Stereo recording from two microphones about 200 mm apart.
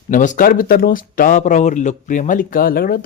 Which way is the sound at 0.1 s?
40° left (ahead or behind).